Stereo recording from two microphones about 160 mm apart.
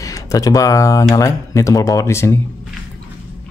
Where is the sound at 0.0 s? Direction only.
20° left (ahead or behind).